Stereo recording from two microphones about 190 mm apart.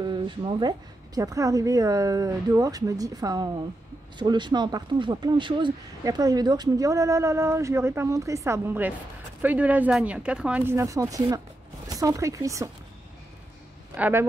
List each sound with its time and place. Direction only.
0.0 s a woman's voice: 25° right (ahead or behind)
13.9 s speech: 10° right (ahead or behind)